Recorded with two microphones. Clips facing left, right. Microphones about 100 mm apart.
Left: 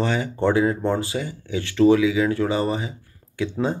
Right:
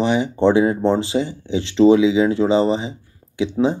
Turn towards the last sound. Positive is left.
turn(degrees=-20)  # may be behind; listen again after turning